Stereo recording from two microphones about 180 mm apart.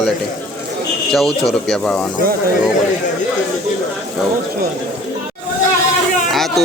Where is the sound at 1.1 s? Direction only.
Centre (ahead or behind).